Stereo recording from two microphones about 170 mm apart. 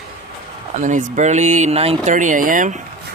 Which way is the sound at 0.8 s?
45° right (ahead or behind).